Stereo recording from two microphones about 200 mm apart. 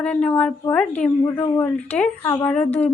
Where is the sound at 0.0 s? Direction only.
5° left (ahead or behind).